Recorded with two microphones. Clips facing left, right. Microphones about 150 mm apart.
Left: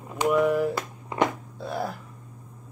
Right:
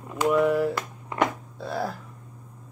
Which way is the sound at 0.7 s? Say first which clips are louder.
Even; 20° left (ahead or behind).